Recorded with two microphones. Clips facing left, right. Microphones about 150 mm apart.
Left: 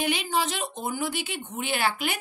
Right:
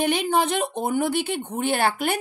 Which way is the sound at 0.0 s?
55° right (ahead or behind).